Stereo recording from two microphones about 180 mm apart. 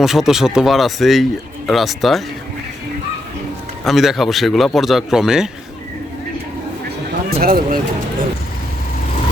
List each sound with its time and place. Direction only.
0.0 s speech: centre (ahead or behind)
3.8 s speech: centre (ahead or behind)
7.3 s speech: 55° right (ahead or behind)